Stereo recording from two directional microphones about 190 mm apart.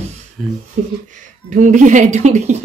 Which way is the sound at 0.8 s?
40° right (ahead or behind).